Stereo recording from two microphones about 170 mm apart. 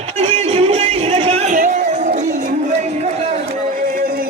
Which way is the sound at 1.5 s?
50° right (ahead or behind).